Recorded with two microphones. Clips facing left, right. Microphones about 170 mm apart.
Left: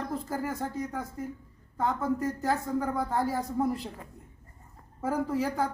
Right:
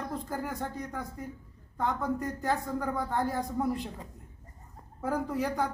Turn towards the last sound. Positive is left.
turn(degrees=5)  # may be behind; listen again after turning